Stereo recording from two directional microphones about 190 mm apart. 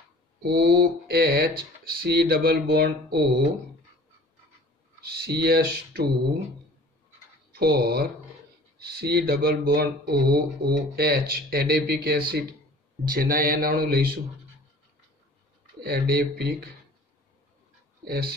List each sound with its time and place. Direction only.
0.4 s speech: 55° right (ahead or behind)
5.0 s speech: 55° right (ahead or behind)
7.5 s speech: 55° right (ahead or behind)
15.8 s speech: 55° right (ahead or behind)
18.0 s speech: 50° right (ahead or behind)